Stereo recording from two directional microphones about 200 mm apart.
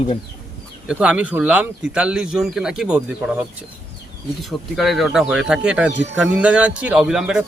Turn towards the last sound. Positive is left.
turn(degrees=-5)  # may be behind; listen again after turning